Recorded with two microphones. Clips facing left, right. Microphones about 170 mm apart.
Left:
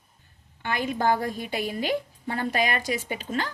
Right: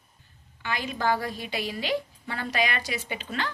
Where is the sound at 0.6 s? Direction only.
50° left (ahead or behind).